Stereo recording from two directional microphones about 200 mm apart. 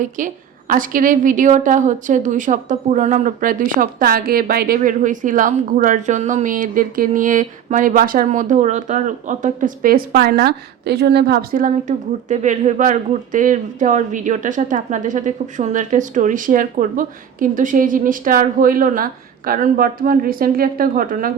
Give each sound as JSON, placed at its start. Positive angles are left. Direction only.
{"t": 0.2, "sound": "a woman's voice", "side_deg": -40}